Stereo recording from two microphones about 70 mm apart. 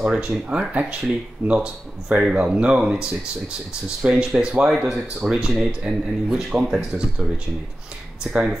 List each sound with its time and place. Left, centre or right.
0.0 s speech: centre